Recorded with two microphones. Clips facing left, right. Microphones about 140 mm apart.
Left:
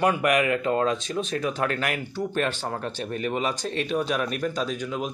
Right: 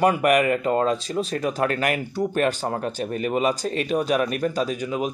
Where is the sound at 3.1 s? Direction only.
5° right (ahead or behind).